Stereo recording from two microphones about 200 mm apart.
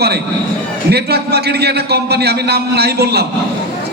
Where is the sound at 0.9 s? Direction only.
55° right (ahead or behind).